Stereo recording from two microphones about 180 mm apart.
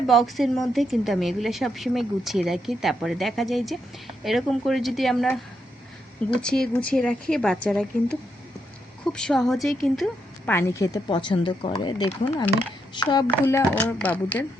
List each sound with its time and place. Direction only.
0.1 s a woman's voice: centre (ahead or behind)
6.4 s a woman's voice: 5° left (ahead or behind)
9.1 s a woman's voice: 5° left (ahead or behind)
10.5 s speech: 15° left (ahead or behind)
13.4 s speech: 15° left (ahead or behind)